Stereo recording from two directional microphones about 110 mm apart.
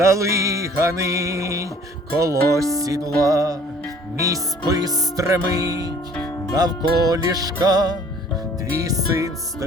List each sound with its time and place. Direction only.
0.0 s music: 25° right (ahead or behind)